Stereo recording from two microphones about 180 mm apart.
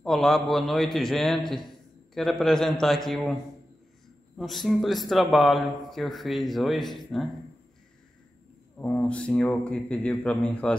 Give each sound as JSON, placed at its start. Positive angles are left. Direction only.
{"t": 0.0, "sound": "speech", "side_deg": 0}
{"t": 4.4, "sound": "speech", "side_deg": 0}
{"t": 8.7, "sound": "speech", "side_deg": 10}